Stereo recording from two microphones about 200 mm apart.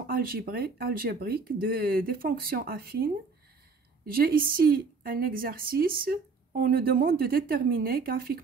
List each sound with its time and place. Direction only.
0.0 s a woman's voice: 45° right (ahead or behind)